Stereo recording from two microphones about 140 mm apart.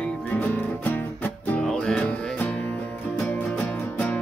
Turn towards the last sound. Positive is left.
turn(degrees=10)  # may be behind; listen again after turning